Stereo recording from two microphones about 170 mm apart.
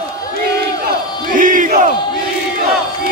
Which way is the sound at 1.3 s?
50° right (ahead or behind).